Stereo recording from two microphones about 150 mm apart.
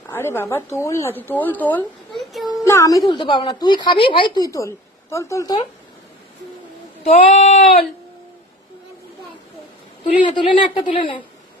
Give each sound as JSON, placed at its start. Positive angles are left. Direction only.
{"t": 0.1, "sound": "speech", "side_deg": 15}
{"t": 2.1, "sound": "child singing", "side_deg": 0}
{"t": 2.6, "sound": "speech", "side_deg": 20}
{"t": 3.1, "sound": "speech", "side_deg": 30}
{"t": 7.0, "sound": "a sound", "side_deg": 45}
{"t": 10.0, "sound": "speech", "side_deg": 35}